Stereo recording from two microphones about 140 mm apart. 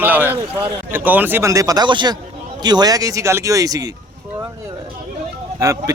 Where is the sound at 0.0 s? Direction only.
15° right (ahead or behind).